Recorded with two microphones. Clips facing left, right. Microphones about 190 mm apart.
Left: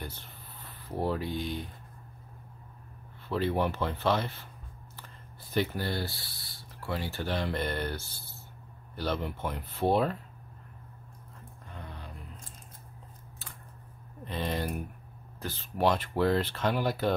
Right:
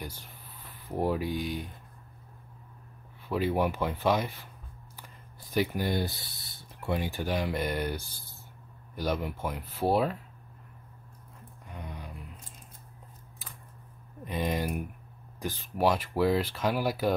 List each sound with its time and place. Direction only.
0.0 s speech: 10° right (ahead or behind)
3.3 s speech: 10° right (ahead or behind)
11.7 s music: 15° right (ahead or behind)
14.2 s a sound: 10° right (ahead or behind)
15.4 s speech: 15° right (ahead or behind)